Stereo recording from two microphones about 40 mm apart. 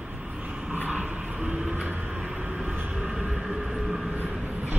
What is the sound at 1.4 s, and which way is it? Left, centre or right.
Vehicle, centre.